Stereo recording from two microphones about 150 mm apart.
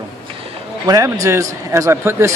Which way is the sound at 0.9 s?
25° right (ahead or behind).